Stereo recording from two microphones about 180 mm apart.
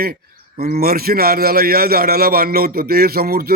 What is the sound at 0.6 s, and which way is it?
A man's voice, 55° right (ahead or behind).